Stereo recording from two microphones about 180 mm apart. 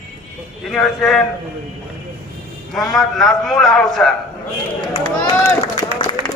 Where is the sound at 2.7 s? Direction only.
Centre (ahead or behind).